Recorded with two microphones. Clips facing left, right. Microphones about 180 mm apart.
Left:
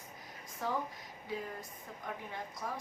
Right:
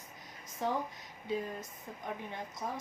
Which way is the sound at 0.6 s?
25° right (ahead or behind).